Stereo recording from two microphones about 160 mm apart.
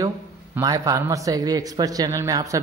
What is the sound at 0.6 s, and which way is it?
A man's voice, 20° right (ahead or behind).